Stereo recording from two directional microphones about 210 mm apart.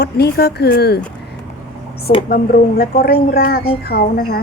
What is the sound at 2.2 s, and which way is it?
Speech, 45° left (ahead or behind).